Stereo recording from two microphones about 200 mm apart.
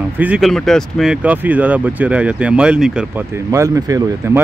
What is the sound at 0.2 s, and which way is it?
Speech, 5° right (ahead or behind).